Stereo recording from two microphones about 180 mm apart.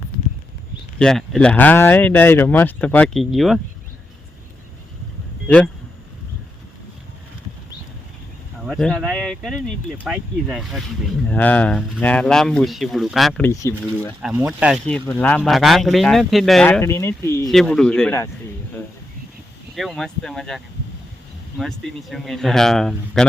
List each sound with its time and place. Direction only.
0.9 s speech: 5° left (ahead or behind)
5.5 s speech: 10° left (ahead or behind)
8.6 s a man's voice: centre (ahead or behind)
11.3 s a man's voice: 10° left (ahead or behind)
13.5 s speech: 15° left (ahead or behind)
14.2 s a man's voice: 5° right (ahead or behind)
16.8 s speech: 15° left (ahead or behind)
17.5 s a man's voice: centre (ahead or behind)
19.7 s a man's voice: centre (ahead or behind)
21.6 s a man's voice: centre (ahead or behind)